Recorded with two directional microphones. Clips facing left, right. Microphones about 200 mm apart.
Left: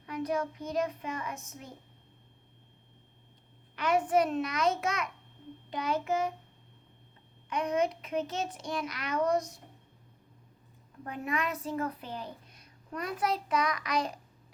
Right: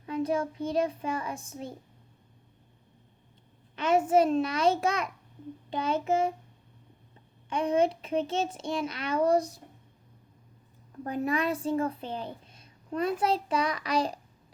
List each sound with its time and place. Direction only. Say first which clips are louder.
0.0 s a child's voice: right 3 dB; 25° right (ahead or behind)
3.8 s a child's voice: right 4 dB; 25° right (ahead or behind)
7.5 s a child's voice: right 4 dB; 30° right (ahead or behind)
11.0 s a child's voice: right 5 dB; 35° right (ahead or behind)